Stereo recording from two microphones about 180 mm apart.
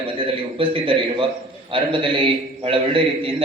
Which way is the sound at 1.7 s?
30° right (ahead or behind).